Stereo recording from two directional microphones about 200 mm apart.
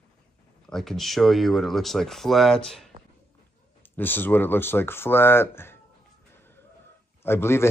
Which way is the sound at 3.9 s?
10° left (ahead or behind).